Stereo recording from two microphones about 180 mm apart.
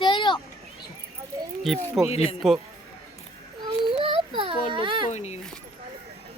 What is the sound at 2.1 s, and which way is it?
Speech, 35° left (ahead or behind).